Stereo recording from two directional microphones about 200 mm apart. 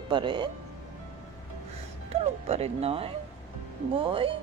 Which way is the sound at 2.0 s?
30° right (ahead or behind).